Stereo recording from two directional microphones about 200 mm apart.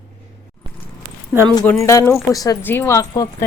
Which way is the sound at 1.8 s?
15° left (ahead or behind).